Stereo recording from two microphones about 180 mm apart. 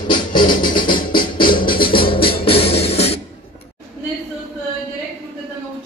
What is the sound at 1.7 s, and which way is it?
Music, 55° left (ahead or behind).